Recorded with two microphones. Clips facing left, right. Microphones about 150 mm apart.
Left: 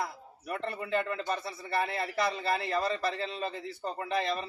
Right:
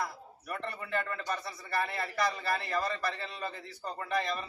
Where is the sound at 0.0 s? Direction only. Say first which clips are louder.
Left 1 dB; 25° left (ahead or behind).